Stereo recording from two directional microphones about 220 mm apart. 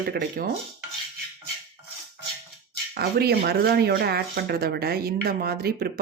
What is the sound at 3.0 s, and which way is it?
Speech, 45° right (ahead or behind).